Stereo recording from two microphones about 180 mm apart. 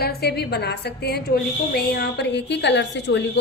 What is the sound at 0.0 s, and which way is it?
A woman's voice, 60° left (ahead or behind).